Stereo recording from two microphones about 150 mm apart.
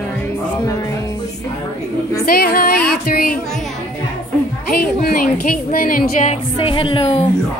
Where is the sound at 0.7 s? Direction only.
20° left (ahead or behind).